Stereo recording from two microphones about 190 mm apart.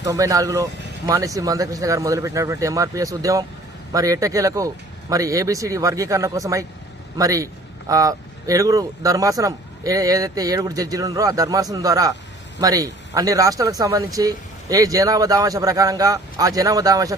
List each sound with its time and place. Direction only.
0.0 s speech: 15° right (ahead or behind)